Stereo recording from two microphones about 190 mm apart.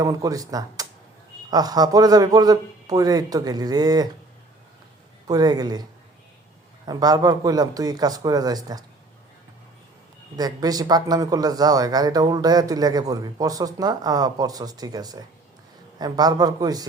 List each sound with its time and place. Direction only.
0.0 s speech: 20° right (ahead or behind)
5.3 s speech: 20° right (ahead or behind)
6.8 s speech: 20° right (ahead or behind)
10.3 s speech: 20° right (ahead or behind)